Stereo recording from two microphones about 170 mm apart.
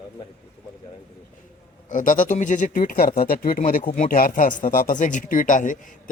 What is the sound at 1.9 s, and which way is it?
Speech, 50° left (ahead or behind).